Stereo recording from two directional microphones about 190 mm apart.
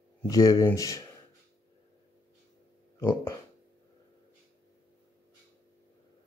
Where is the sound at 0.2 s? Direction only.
20° left (ahead or behind).